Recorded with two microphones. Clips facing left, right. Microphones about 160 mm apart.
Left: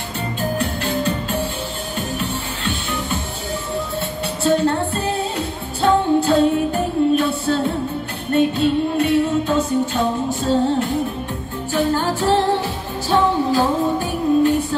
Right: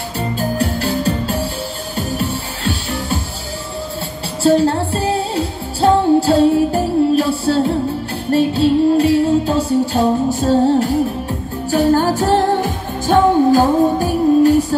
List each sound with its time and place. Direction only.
0.4 s music: 35° right (ahead or behind)
4.4 s music: 35° right (ahead or behind)